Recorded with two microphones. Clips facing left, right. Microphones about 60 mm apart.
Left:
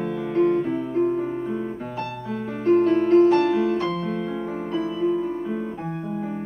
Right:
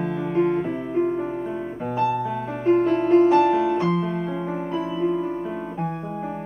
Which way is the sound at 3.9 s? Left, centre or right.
Centre.